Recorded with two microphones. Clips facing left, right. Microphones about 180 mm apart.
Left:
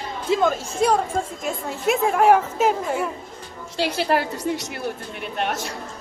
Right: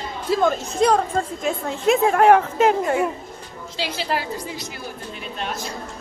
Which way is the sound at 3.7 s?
60° left (ahead or behind).